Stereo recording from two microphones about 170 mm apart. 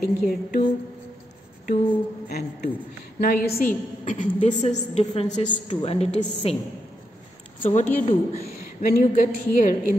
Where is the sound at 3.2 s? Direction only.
60° left (ahead or behind); by 6.5 s 35° left (ahead or behind).